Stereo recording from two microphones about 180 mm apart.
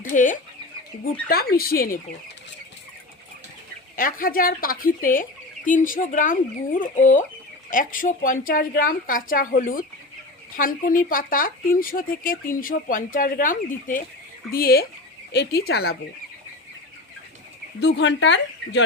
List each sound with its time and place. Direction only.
0.0 s speech: 45° left (ahead or behind)
3.9 s speech: 50° left (ahead or behind)
17.7 s speech: 75° left (ahead or behind)